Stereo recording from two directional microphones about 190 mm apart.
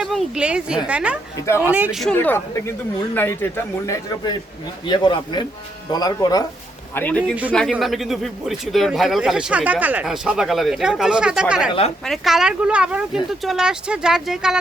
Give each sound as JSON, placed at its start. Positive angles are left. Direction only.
{"t": 0.0, "sound": "a woman's voice", "side_deg": 0}
{"t": 1.4, "sound": "a man's voice", "side_deg": 15}
{"t": 1.6, "sound": "speech", "side_deg": -10}
{"t": 2.1, "sound": "a man's voice", "side_deg": 10}
{"t": 6.9, "sound": "a man's voice", "side_deg": 10}